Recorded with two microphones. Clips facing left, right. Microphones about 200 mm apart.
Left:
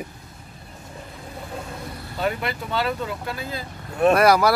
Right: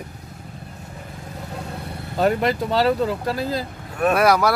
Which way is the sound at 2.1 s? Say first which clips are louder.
Right 7 dB; 40° right (ahead or behind).